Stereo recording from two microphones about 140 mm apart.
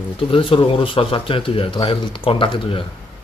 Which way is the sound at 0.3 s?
40° left (ahead or behind).